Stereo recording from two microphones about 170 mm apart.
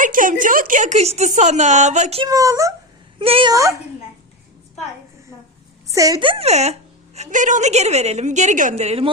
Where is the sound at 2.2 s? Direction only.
20° right (ahead or behind).